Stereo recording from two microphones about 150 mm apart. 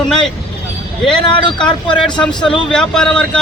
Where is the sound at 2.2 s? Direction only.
5° left (ahead or behind).